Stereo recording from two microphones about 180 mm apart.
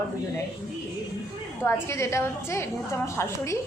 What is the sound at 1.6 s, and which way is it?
A woman's voice, 15° left (ahead or behind).